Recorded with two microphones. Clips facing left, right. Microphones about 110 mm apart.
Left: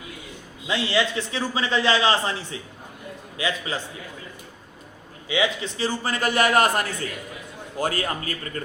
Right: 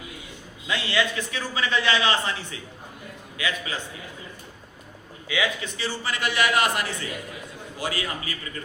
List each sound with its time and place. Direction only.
0.7 s a man's voice: 30° left (ahead or behind)
5.3 s a man's voice: 30° left (ahead or behind); by 8.6 s 45° left (ahead or behind)